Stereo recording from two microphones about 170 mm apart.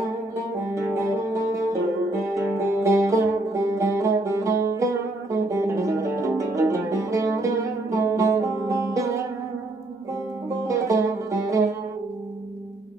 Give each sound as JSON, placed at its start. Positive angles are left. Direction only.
{"t": 0.6, "sound": "music", "side_deg": -15}
{"t": 2.3, "sound": "music", "side_deg": -15}
{"t": 10.7, "sound": "music", "side_deg": -20}